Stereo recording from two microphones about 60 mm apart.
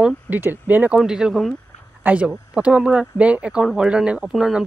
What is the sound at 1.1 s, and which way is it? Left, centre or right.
Speech, centre.